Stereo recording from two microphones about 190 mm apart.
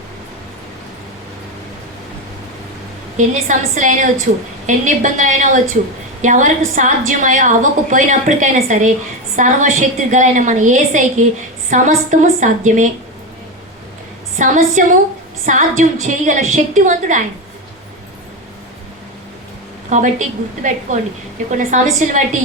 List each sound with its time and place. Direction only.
3.2 s a woman's voice: 40° right (ahead or behind)
14.3 s a woman's voice: 40° right (ahead or behind)
19.9 s a woman's voice: 40° right (ahead or behind)